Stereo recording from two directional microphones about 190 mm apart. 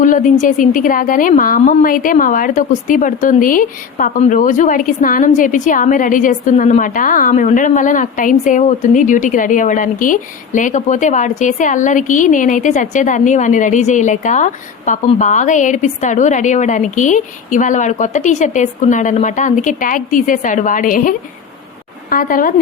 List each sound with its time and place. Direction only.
0.0 s a woman's voice: 45° left (ahead or behind)